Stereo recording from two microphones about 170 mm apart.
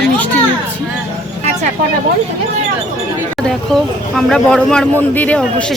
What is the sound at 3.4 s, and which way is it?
Speech, centre (ahead or behind).